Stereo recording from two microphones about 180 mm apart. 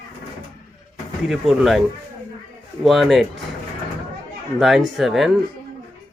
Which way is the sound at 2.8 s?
Centre (ahead or behind).